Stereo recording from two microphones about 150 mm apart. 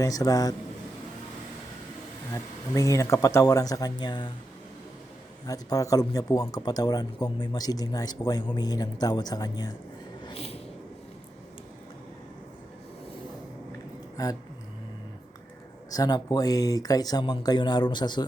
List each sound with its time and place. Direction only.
0.0 s speech: 25° left (ahead or behind)
2.3 s speech: 20° left (ahead or behind)
5.5 s speech: 20° left (ahead or behind)
10.2 s a sound: 40° left (ahead or behind)
14.2 s speech: 25° left (ahead or behind)
15.9 s speech: 25° left (ahead or behind)